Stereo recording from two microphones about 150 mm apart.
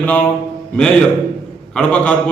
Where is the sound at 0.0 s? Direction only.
10° left (ahead or behind).